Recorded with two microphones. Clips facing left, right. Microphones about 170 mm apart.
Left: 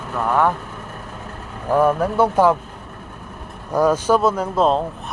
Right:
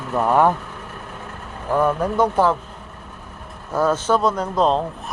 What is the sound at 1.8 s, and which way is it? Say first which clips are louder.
Speech: left 2 dB; 10° left (ahead or behind).